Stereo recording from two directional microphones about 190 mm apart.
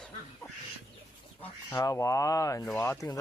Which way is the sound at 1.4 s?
15° left (ahead or behind).